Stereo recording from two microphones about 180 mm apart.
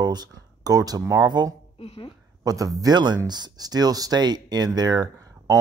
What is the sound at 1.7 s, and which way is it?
Speech, 35° left (ahead or behind).